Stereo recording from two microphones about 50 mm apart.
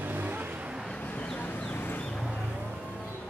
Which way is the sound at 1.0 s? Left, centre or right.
Left.